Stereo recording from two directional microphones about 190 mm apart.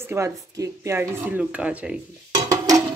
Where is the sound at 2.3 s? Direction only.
20° right (ahead or behind).